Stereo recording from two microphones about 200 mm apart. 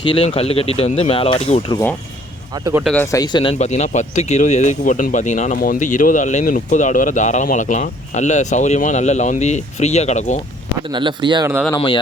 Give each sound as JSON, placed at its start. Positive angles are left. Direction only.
{"t": 0.0, "sound": "speech", "side_deg": 30}
{"t": 2.8, "sound": "speech", "side_deg": 10}
{"t": 10.9, "sound": "speech", "side_deg": -25}